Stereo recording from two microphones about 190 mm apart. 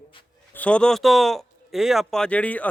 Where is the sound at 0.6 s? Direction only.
5° left (ahead or behind).